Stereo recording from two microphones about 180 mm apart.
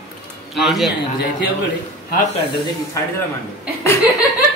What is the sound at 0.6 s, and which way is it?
Speech, centre (ahead or behind).